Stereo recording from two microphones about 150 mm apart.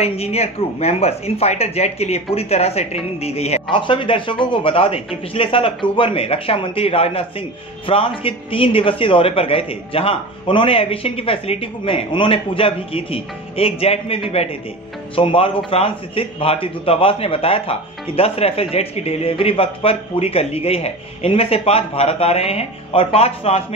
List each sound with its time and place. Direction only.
0.0 s speech: 45° left (ahead or behind)
3.7 s speech: 35° left (ahead or behind)